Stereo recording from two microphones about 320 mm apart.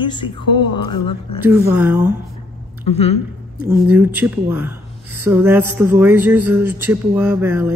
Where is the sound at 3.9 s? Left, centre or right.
Centre.